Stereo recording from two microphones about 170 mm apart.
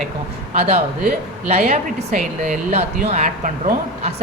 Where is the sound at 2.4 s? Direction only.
45° right (ahead or behind).